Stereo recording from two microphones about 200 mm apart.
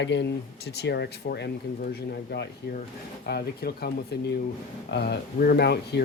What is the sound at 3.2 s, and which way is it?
Speech, 55° left (ahead or behind).